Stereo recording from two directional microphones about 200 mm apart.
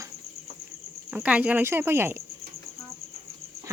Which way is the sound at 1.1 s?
5° right (ahead or behind).